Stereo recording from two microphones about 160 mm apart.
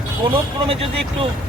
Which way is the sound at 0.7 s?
35° right (ahead or behind).